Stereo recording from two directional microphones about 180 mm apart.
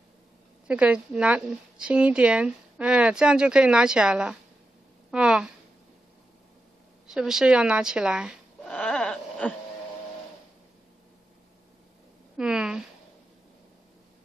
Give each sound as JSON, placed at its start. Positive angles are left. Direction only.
{"t": 0.7, "sound": "a woman's voice", "side_deg": -5}
{"t": 7.1, "sound": "speech", "side_deg": -5}
{"t": 8.7, "sound": "wail", "side_deg": 5}
{"t": 12.4, "sound": "a sound", "side_deg": -5}